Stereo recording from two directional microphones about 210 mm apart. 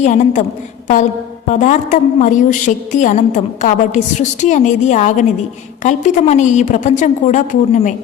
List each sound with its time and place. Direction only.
0.0 s a woman's voice: 35° left (ahead or behind)
1.5 s a woman's voice: 35° left (ahead or behind)